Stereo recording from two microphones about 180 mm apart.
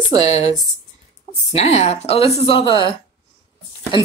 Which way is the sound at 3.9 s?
30° left (ahead or behind).